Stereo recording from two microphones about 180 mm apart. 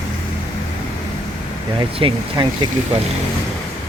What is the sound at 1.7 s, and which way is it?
Speech, 30° right (ahead or behind).